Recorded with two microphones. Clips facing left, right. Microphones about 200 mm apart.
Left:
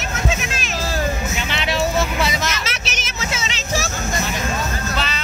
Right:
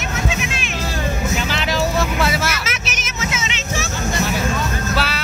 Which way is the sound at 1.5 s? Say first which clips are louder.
Left 3 dB; centre (ahead or behind).